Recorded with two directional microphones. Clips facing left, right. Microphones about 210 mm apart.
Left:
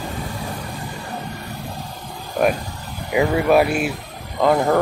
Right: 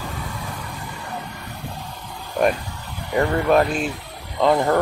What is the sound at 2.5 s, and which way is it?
Vehicle, 40° left (ahead or behind).